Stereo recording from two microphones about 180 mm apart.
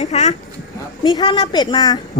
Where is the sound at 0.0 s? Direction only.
40° left (ahead or behind).